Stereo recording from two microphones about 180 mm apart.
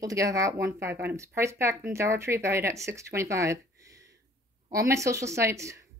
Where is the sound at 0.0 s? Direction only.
20° right (ahead or behind).